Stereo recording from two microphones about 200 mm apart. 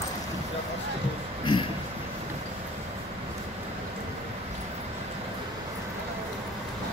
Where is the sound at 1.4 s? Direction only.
25° left (ahead or behind).